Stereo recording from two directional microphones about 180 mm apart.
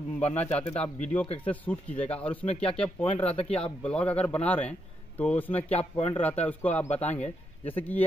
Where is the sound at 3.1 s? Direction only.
35° left (ahead or behind).